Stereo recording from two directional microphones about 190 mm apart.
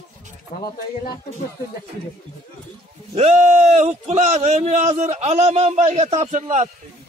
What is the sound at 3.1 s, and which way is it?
A man's voice, 35° right (ahead or behind).